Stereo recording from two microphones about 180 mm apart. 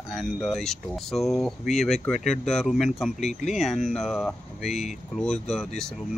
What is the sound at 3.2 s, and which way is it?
Speech, 40° left (ahead or behind).